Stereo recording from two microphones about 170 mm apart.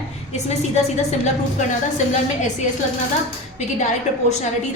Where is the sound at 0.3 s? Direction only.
40° left (ahead or behind).